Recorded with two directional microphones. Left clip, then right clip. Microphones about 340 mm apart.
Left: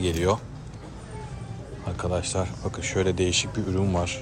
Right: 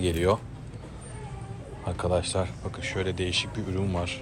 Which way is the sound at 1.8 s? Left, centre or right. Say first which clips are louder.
Right 2 dB; centre.